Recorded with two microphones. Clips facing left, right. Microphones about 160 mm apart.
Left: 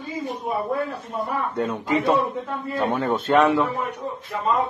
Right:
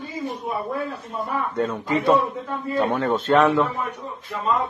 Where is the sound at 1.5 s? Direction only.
15° left (ahead or behind).